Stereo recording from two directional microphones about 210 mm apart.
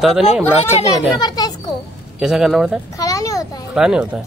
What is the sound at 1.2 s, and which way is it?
Speech, 20° left (ahead or behind).